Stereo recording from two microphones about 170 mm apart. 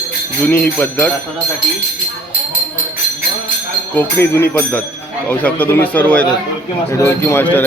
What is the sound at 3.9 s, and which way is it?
Speech, 10° left (ahead or behind).